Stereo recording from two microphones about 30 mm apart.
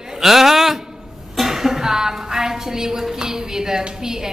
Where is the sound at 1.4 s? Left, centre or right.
Centre.